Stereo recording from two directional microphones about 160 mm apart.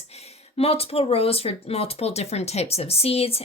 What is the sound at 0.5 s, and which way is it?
Speech, 40° left (ahead or behind).